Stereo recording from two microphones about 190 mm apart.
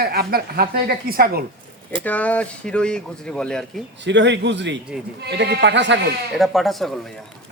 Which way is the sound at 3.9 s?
70° right (ahead or behind).